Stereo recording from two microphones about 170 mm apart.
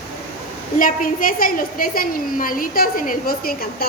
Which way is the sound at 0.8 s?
50° left (ahead or behind).